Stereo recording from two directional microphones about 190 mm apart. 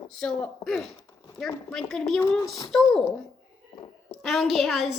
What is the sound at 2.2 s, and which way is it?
Speech, 15° left (ahead or behind).